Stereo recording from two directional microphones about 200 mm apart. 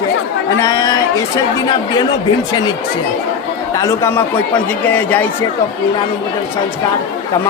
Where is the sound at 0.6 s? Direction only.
20° left (ahead or behind).